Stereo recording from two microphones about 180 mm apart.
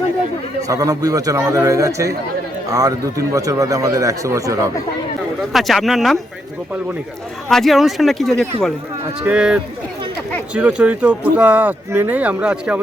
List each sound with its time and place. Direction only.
0.7 s speech: 20° right (ahead or behind)
5.5 s speech: centre (ahead or behind)
7.5 s speech: centre (ahead or behind)